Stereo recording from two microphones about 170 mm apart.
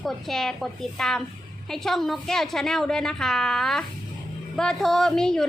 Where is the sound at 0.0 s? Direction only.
Centre (ahead or behind).